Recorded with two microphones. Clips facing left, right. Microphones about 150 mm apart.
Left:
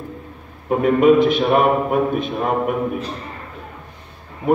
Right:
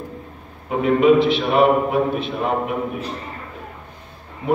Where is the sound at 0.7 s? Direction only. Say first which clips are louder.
Left 1 dB; 50° left (ahead or behind).